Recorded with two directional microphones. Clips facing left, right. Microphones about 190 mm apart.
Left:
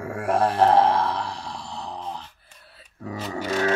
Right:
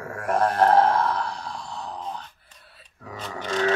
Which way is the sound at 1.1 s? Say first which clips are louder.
Right 1 dB; 30° left (ahead or behind).